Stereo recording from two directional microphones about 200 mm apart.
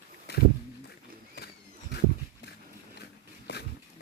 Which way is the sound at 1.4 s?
55° left (ahead or behind).